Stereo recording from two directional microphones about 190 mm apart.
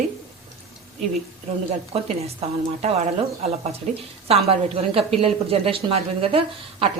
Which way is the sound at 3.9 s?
35° right (ahead or behind).